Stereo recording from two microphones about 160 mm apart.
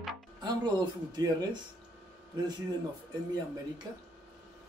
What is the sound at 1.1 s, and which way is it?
Speech, 25° right (ahead or behind).